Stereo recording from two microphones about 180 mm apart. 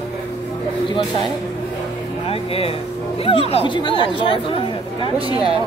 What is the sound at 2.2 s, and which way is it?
Speech, 30° left (ahead or behind).